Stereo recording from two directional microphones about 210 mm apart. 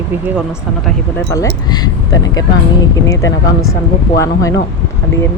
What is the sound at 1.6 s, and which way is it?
Speech, 20° left (ahead or behind).